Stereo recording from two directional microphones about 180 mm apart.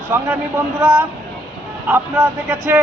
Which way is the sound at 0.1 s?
15° right (ahead or behind).